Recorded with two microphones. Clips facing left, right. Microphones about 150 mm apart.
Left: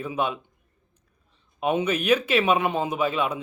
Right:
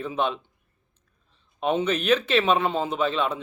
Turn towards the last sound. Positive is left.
turn(degrees=10)  # may be behind; listen again after turning